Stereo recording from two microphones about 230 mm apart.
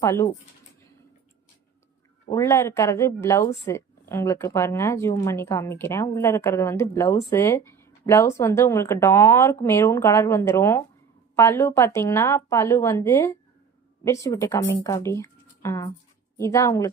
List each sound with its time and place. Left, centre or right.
0.0 s speech: centre
2.3 s speech: centre